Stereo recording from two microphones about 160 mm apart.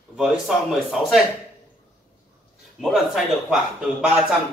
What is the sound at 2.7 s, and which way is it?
A man's voice, centre (ahead or behind).